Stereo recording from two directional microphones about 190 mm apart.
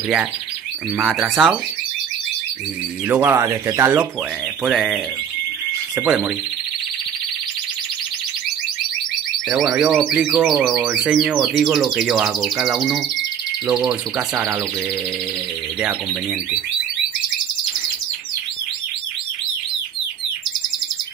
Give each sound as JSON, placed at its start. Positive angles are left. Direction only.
{"t": 0.9, "sound": "speech", "side_deg": 0}
{"t": 3.1, "sound": "speech", "side_deg": -10}
{"t": 6.0, "sound": "speech", "side_deg": 0}
{"t": 9.5, "sound": "speech", "side_deg": -5}
{"t": 14.1, "sound": "speech", "side_deg": -15}